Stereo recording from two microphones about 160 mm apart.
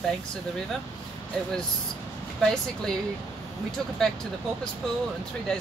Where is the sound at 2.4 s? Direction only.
5° left (ahead or behind).